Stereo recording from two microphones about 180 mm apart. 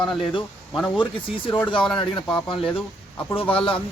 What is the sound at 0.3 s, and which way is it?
Speech, 25° left (ahead or behind).